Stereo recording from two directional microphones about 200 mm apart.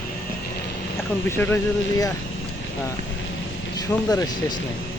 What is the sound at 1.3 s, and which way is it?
Speech, 10° left (ahead or behind).